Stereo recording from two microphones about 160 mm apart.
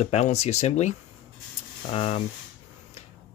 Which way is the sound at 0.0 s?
45° left (ahead or behind).